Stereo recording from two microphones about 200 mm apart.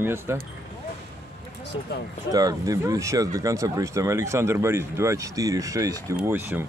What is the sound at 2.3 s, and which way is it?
Speech, 15° right (ahead or behind).